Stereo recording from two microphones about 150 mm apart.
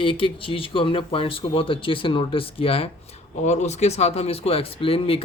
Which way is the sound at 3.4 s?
50° left (ahead or behind).